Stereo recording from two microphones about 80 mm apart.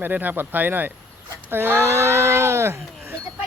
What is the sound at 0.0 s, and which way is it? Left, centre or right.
Speech, right.